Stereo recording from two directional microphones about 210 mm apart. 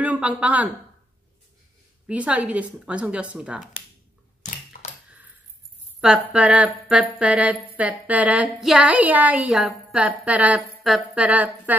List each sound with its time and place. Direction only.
0.0 s speech: 5° right (ahead or behind)
2.0 s speech: 5° right (ahead or behind)
4.7 s a sound: 40° left (ahead or behind)
5.9 s speech: 5° right (ahead or behind)